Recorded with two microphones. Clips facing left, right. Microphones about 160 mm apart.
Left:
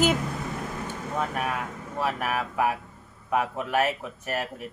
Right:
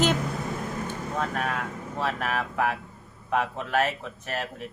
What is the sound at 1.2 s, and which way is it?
Speech, 10° left (ahead or behind).